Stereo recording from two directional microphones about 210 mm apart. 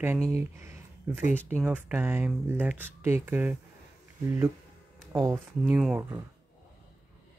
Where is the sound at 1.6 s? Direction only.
10° right (ahead or behind).